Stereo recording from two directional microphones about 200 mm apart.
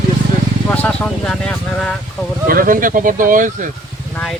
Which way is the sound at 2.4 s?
45° right (ahead or behind).